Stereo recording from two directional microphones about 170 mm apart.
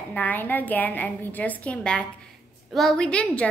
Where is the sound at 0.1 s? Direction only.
10° left (ahead or behind).